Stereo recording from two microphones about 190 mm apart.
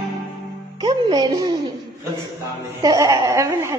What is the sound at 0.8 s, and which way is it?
Music, 20° right (ahead or behind).